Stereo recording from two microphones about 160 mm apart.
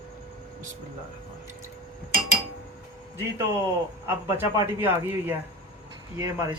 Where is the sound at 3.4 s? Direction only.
20° right (ahead or behind).